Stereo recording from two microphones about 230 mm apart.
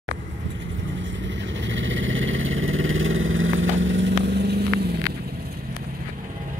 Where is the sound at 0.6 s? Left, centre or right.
Right.